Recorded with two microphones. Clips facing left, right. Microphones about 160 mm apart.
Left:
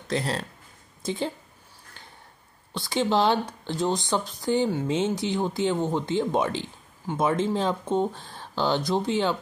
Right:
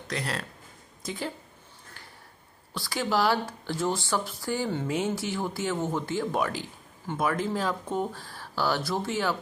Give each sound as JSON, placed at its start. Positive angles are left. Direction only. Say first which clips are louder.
{"t": 0.1, "sound": "a woman's voice", "louder": "left 5 dB", "side_deg": 30}
{"t": 2.7, "sound": "speech", "louder": "left 4 dB", "side_deg": 20}